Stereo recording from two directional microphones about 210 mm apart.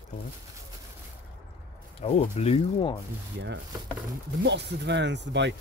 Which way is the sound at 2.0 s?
30° left (ahead or behind).